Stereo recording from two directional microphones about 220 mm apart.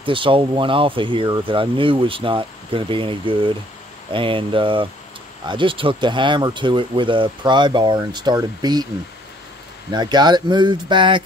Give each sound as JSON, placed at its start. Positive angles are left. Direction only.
{"t": 0.0, "sound": "speech", "side_deg": -25}
{"t": 9.9, "sound": "speech", "side_deg": -20}